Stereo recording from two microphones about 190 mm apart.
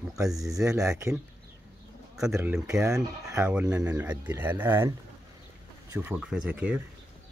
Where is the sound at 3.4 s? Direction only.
5° right (ahead or behind).